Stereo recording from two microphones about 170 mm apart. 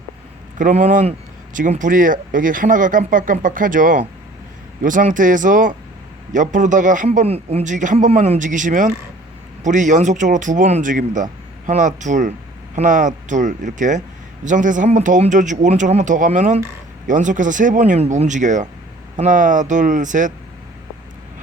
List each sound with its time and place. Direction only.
0.6 s speech: 45° right (ahead or behind)